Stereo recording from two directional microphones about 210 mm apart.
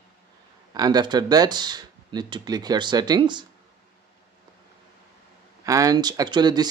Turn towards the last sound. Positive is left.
turn(degrees=-20)  # may be behind; listen again after turning